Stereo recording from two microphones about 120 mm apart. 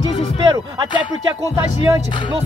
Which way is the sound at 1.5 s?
25° right (ahead or behind).